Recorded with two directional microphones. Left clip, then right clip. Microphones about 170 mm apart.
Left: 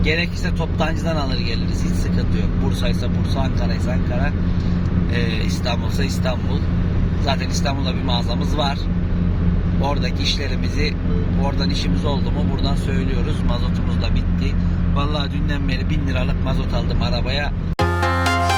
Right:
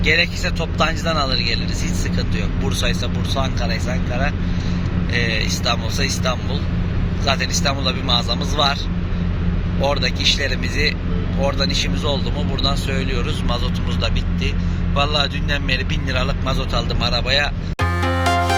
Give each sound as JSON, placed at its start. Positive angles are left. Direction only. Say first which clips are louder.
{"t": 0.0, "sound": "a man's voice", "louder": "right 4 dB", "side_deg": 10}
{"t": 5.1, "sound": "a man's voice", "louder": "right 6 dB", "side_deg": 10}
{"t": 9.8, "sound": "a man's voice", "louder": "right 5 dB", "side_deg": 15}
{"t": 11.3, "sound": "a man's voice", "louder": "right 6 dB", "side_deg": 15}
{"t": 14.9, "sound": "a man's voice", "louder": "right 7 dB", "side_deg": 5}